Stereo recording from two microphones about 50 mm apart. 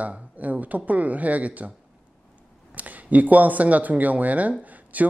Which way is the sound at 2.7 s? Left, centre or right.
Right.